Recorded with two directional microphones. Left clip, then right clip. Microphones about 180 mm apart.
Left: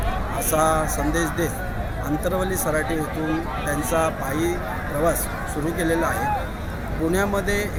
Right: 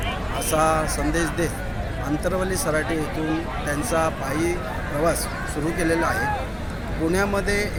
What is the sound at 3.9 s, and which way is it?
Speech, centre (ahead or behind).